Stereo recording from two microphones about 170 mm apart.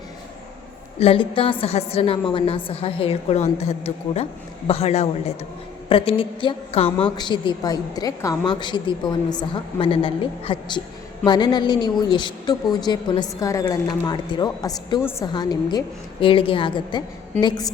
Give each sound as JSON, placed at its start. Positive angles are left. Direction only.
{"t": 0.9, "sound": "a woman's voice", "side_deg": 35}